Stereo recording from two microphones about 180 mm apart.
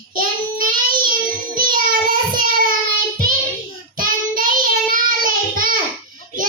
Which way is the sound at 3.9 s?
50° right (ahead or behind).